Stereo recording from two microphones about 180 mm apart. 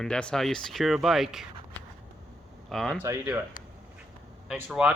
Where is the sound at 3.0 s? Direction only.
10° right (ahead or behind).